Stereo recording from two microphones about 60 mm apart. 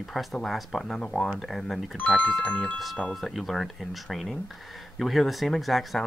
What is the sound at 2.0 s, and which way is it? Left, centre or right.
Speech, centre.